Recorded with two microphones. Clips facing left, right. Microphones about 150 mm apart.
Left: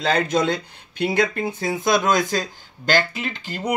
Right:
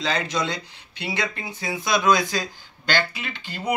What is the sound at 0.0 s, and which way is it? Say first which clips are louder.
Speech: left 5 dB; 55° left (ahead or behind).